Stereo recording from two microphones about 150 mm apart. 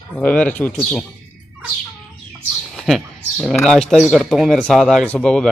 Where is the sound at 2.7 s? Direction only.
Centre (ahead or behind).